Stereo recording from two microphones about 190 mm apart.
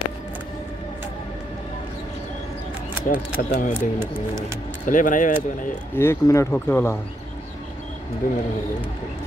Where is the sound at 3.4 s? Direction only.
60° left (ahead or behind).